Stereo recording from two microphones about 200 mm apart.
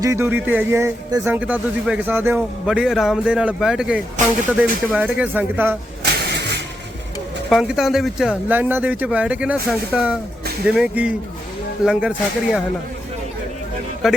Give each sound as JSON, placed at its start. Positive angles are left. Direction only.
{"t": 0.0, "sound": "speech", "side_deg": -15}
{"t": 6.0, "sound": "vehicle", "side_deg": -55}
{"t": 7.5, "sound": "speech", "side_deg": 0}
{"t": 14.0, "sound": "speech", "side_deg": 0}